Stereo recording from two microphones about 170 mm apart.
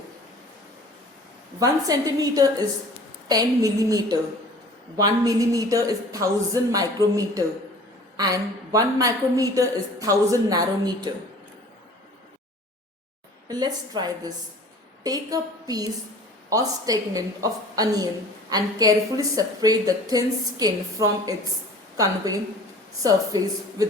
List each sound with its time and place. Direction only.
1.5 s a woman's voice: 20° right (ahead or behind)
13.5 s a woman's voice: 25° right (ahead or behind)